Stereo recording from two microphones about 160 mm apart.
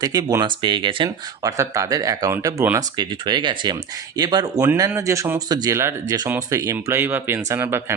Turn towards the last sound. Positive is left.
turn(degrees=-15)  # may be behind; listen again after turning